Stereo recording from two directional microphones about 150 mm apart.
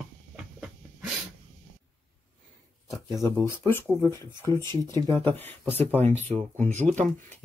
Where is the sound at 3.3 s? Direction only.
15° left (ahead or behind).